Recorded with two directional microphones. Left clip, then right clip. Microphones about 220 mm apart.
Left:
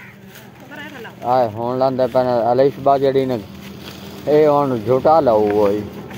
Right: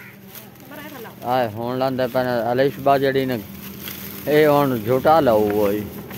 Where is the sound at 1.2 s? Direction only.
20° right (ahead or behind).